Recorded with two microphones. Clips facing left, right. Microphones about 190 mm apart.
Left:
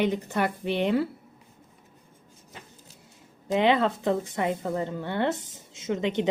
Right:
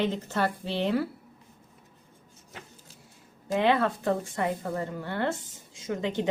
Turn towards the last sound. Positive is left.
turn(degrees=20)  # may be behind; listen again after turning